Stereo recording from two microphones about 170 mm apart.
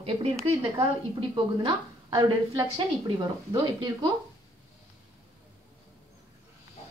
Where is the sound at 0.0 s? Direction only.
35° right (ahead or behind).